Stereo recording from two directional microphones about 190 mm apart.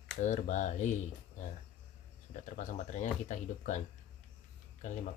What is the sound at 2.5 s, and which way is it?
Speech, 40° left (ahead or behind).